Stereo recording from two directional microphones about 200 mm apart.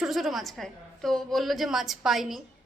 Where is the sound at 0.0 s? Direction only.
Centre (ahead or behind).